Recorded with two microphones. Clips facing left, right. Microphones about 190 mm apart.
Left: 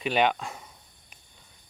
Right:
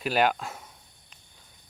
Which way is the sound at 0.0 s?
Centre (ahead or behind).